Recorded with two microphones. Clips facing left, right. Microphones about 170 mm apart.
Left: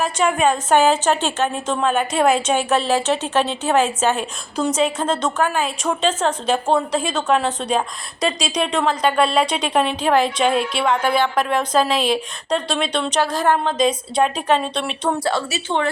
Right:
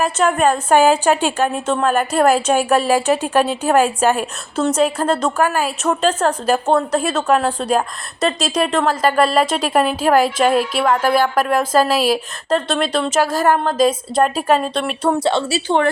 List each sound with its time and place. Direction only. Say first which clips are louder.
0.3 s a woman's voice: right 1 dB; 5° left (ahead or behind)
15.2 s a woman's voice: right 4 dB; 25° right (ahead or behind)